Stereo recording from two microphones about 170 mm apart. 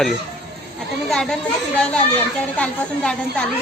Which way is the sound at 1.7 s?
5° left (ahead or behind).